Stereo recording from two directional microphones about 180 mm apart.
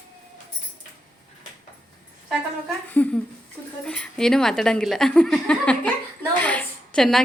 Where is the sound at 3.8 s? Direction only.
5° left (ahead or behind).